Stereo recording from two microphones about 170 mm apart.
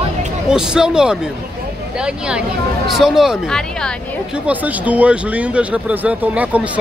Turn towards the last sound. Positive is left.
turn(degrees=-10)  # may be behind; listen again after turning